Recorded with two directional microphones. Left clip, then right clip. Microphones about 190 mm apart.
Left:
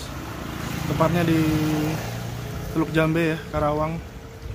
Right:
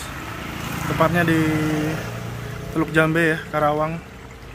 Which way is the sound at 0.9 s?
Centre (ahead or behind).